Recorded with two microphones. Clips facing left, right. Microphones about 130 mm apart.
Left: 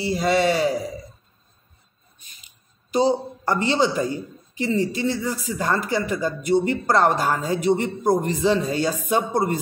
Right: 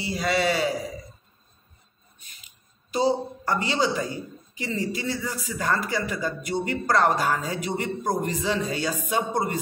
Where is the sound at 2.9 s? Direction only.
25° left (ahead or behind).